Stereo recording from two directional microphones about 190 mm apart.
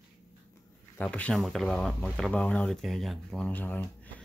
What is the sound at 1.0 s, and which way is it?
Speech, 5° left (ahead or behind).